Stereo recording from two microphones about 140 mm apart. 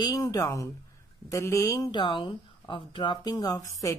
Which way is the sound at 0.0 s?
30° left (ahead or behind).